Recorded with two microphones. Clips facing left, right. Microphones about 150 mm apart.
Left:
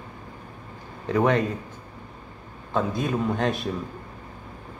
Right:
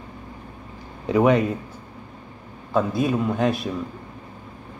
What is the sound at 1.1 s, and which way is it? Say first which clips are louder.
Speech: right 4 dB; 10° right (ahead or behind).